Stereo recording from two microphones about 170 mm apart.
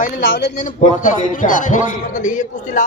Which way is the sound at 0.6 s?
50° left (ahead or behind).